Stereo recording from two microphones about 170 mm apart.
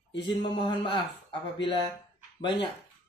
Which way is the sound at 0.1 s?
30° left (ahead or behind).